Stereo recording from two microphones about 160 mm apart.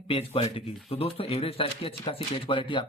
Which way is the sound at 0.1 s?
35° left (ahead or behind).